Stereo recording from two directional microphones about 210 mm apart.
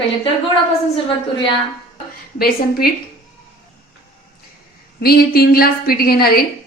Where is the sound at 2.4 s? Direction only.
45° left (ahead or behind).